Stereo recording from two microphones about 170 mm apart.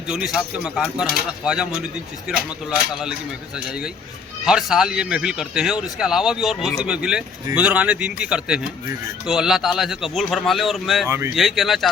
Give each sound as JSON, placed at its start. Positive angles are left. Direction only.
{"t": 0.1, "sound": "speech", "side_deg": -5}
{"t": 4.4, "sound": "a man's voice", "side_deg": -5}